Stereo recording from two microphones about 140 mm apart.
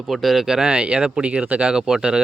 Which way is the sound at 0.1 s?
Centre (ahead or behind).